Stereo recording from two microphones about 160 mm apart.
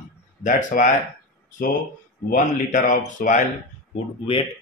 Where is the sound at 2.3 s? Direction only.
50° left (ahead or behind).